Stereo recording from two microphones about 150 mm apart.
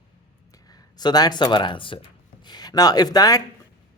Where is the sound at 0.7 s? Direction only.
25° left (ahead or behind).